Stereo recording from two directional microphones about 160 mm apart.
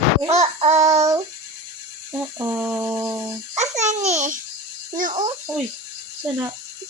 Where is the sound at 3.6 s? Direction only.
45° right (ahead or behind).